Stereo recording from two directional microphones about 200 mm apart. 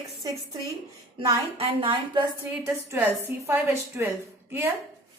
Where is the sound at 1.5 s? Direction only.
25° right (ahead or behind).